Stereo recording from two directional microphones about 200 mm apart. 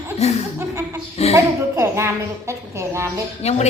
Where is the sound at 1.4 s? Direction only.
15° right (ahead or behind).